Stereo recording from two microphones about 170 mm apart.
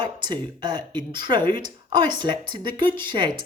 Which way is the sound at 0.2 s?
25° right (ahead or behind).